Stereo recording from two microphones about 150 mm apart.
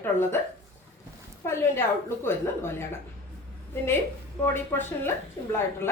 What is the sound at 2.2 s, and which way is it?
Speech, 15° left (ahead or behind).